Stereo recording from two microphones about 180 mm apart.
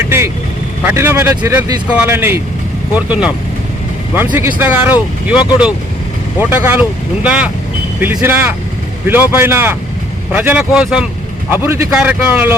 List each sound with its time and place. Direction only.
0.0 s vehicle: 15° right (ahead or behind)
0.9 s speech: 10° right (ahead or behind)